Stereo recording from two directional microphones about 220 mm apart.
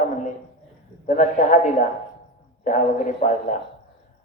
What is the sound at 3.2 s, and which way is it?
Speech, 35° left (ahead or behind).